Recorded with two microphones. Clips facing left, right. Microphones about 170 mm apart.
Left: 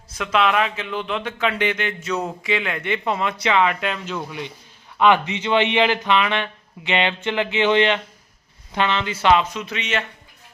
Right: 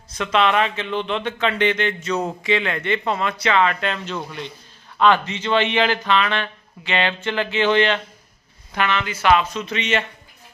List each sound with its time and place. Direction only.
0.1 s speech: 5° left (ahead or behind)